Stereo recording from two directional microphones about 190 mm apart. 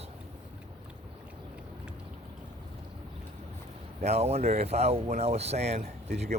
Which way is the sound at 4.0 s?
35° right (ahead or behind).